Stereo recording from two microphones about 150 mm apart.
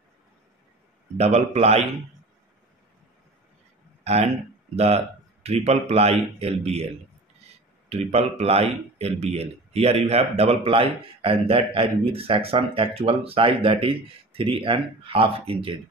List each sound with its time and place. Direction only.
1.1 s a man's voice: 45° right (ahead or behind)
4.0 s a man's voice: 45° right (ahead or behind)
7.9 s speech: 45° right (ahead or behind)